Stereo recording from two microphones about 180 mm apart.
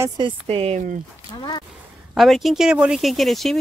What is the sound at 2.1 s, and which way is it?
Speech, centre (ahead or behind).